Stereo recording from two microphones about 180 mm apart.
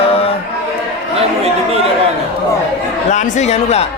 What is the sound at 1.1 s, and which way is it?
Speech, 35° right (ahead or behind).